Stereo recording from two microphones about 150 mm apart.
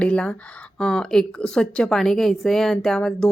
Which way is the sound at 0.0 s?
10° left (ahead or behind).